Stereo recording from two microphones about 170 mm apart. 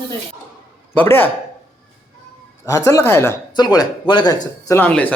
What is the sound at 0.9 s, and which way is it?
Speech, 10° left (ahead or behind).